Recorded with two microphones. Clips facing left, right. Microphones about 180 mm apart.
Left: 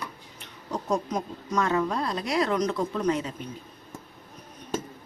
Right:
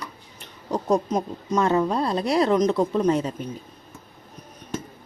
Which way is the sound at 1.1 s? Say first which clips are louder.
Right 5 dB; 25° right (ahead or behind).